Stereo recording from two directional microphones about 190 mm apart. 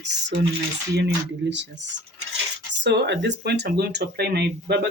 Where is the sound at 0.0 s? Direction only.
65° right (ahead or behind).